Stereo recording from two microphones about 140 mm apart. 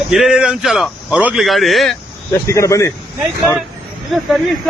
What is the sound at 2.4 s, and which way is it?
Speech, 20° left (ahead or behind).